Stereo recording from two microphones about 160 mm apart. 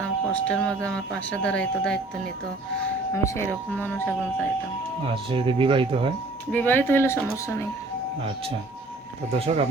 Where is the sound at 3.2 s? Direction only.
15° left (ahead or behind).